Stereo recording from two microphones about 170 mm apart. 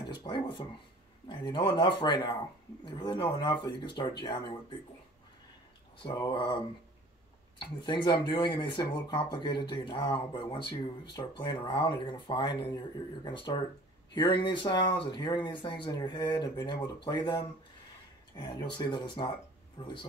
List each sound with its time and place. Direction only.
0.1 s speech: 30° left (ahead or behind)
6.0 s speech: 30° left (ahead or behind)
7.5 s speech: 30° left (ahead or behind)